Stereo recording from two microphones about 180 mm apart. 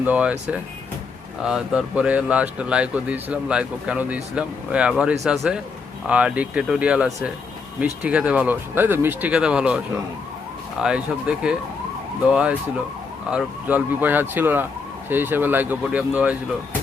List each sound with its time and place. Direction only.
0.0 s speech: 10° right (ahead or behind)